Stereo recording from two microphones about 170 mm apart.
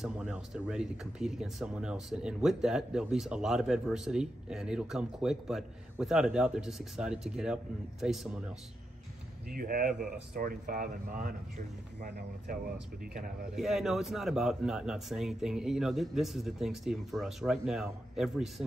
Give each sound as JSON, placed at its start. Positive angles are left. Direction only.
{"t": 0.0, "sound": "speech", "side_deg": -5}
{"t": 9.6, "sound": "speech", "side_deg": -55}
{"t": 13.0, "sound": "speech", "side_deg": -55}
{"t": 13.6, "sound": "speech", "side_deg": 0}